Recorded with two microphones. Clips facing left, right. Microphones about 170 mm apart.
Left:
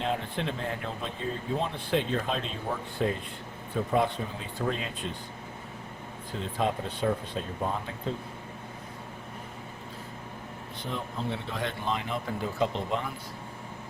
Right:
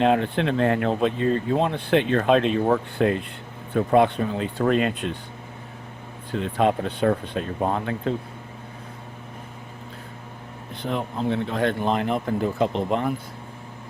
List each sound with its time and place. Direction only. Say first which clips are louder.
0.0 s speech: right 10 dB; 70° right (ahead or behind)
6.3 s speech: right 8 dB; 65° right (ahead or behind)
10.8 s speech: right 8 dB; 65° right (ahead or behind)